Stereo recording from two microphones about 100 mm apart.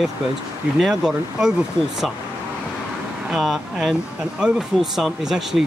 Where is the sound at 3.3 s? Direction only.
Centre (ahead or behind).